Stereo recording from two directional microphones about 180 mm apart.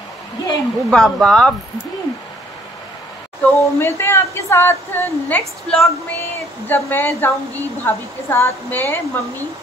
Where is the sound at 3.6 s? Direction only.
15° left (ahead or behind).